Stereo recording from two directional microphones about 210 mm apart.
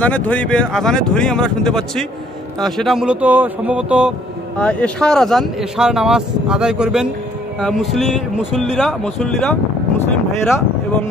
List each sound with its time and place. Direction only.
0.0 s speech: 5° left (ahead or behind)
4.6 s speech: 5° left (ahead or behind)